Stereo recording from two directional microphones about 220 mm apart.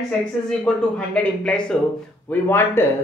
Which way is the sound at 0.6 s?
5° left (ahead or behind).